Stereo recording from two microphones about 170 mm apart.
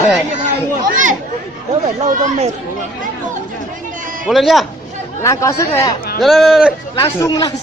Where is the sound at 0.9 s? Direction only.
50° right (ahead or behind).